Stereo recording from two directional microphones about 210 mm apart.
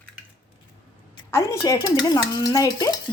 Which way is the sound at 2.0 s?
20° left (ahead or behind).